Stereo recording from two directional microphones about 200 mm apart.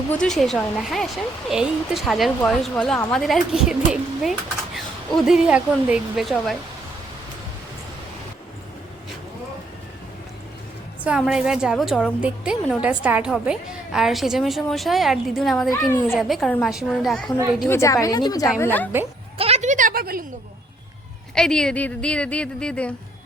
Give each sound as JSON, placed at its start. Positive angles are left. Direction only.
{"t": 0.1, "sound": "a woman's voice", "side_deg": 5}
{"t": 11.0, "sound": "a woman's voice", "side_deg": -5}
{"t": 17.7, "sound": "a woman's voice", "side_deg": 15}
{"t": 19.4, "sound": "a sound", "side_deg": -30}
{"t": 21.3, "sound": "a woman's voice", "side_deg": 5}